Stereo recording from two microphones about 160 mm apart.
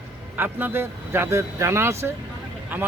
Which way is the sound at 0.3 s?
10° right (ahead or behind).